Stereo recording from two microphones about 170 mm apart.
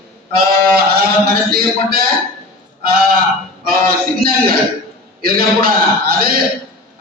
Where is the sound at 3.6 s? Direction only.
60° right (ahead or behind).